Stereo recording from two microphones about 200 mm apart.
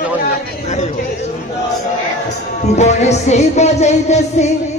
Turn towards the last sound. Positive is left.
turn(degrees=35)  # may be behind; listen again after turning